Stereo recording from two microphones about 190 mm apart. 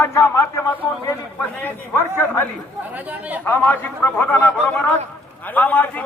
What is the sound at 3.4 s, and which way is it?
A man's voice, 10° left (ahead or behind).